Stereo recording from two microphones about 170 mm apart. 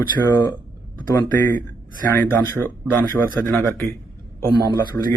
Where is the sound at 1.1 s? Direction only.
10° left (ahead or behind).